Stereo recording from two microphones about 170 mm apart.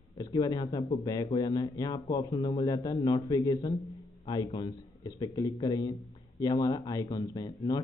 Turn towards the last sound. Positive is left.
turn(degrees=20)  # may be behind; listen again after turning